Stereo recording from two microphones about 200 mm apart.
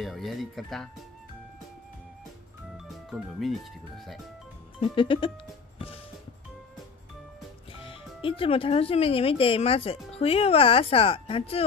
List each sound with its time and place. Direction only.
0.0 s speech: centre (ahead or behind)
3.1 s speech: centre (ahead or behind)
4.7 s speech: 25° left (ahead or behind)
7.8 s speech: 25° left (ahead or behind)